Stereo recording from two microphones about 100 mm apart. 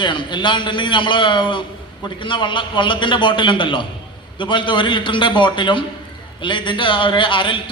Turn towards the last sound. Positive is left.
turn(degrees=55)  # may be behind; listen again after turning